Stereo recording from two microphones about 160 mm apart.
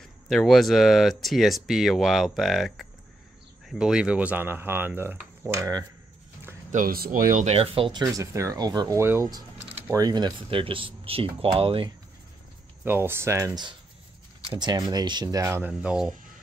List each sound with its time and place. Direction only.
0.0 s speech: 5° left (ahead or behind); by 5.9 s 20° right (ahead or behind)
6.7 s speech: 60° right (ahead or behind)
7.5 s speech: 35° right (ahead or behind)
8.0 s speech: 20° right (ahead or behind)
12.8 s speech: 15° right (ahead or behind)
15.3 s speech: 15° right (ahead or behind)